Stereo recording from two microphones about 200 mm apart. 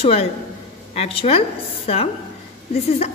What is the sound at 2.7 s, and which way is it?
Speech, 35° left (ahead or behind).